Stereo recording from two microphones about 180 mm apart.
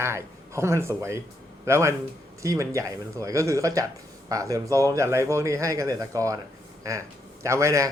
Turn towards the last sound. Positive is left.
turn(degrees=-15)  # may be behind; listen again after turning